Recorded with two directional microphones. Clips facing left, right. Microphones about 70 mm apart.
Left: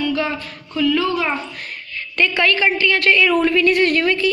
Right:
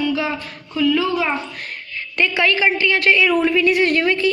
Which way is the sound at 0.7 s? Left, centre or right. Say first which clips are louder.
Even; centre.